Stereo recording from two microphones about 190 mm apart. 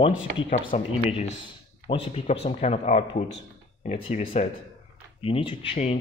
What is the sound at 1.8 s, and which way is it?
Speech, 30° left (ahead or behind).